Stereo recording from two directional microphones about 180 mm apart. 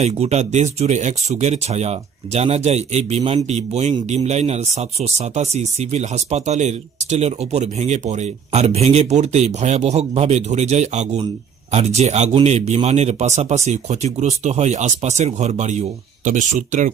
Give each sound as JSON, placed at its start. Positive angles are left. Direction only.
{"t": 0.0, "sound": "speech", "side_deg": -35}